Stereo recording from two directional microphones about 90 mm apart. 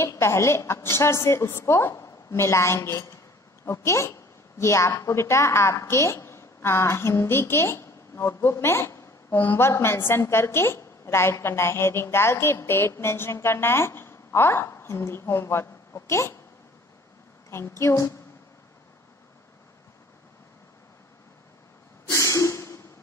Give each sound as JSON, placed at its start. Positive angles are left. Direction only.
{"t": 0.2, "sound": "a woman's voice", "side_deg": 30}
{"t": 17.5, "sound": "a woman's voice", "side_deg": 30}
{"t": 22.1, "sound": "a sound", "side_deg": 35}